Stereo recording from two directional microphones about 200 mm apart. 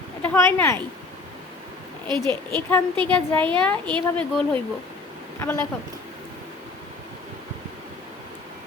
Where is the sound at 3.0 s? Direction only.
5° left (ahead or behind).